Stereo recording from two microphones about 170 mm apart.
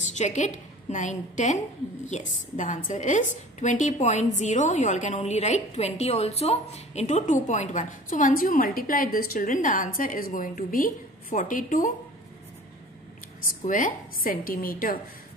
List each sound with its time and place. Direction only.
0.0 s a woman's voice: 45° left (ahead or behind)
13.7 s a woman's voice: 50° left (ahead or behind)